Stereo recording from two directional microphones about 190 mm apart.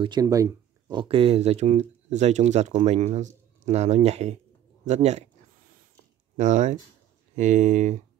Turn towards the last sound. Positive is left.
turn(degrees=-40)  # may be behind; listen again after turning